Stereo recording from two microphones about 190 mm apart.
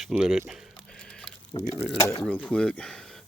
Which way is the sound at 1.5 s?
25° left (ahead or behind).